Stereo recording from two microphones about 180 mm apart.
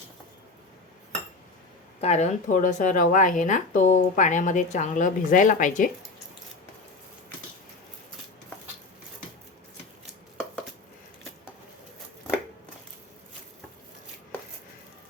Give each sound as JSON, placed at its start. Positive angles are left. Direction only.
{"t": 2.0, "sound": "speech", "side_deg": 40}